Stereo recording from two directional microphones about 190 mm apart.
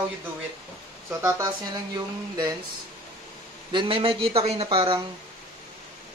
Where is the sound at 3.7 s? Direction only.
30° right (ahead or behind).